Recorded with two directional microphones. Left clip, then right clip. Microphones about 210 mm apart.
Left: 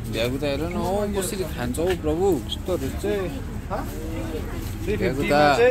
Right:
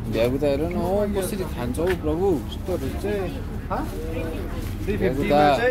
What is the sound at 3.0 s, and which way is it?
Speech, 35° left (ahead or behind).